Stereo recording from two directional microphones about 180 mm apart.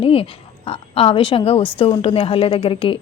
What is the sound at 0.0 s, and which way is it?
A woman's voice, 30° left (ahead or behind).